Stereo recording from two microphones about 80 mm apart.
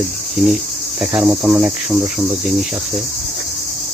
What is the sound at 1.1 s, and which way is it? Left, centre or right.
Speech, centre.